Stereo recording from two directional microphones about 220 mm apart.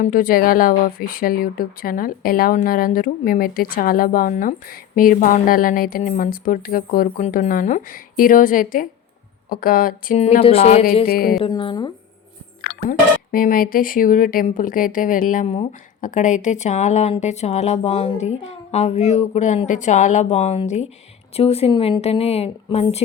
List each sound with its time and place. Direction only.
0.0 s speech: 40° left (ahead or behind)
11.0 s music: 45° left (ahead or behind)
11.4 s speech: 20° left (ahead or behind)
12.9 s speech: 40° left (ahead or behind)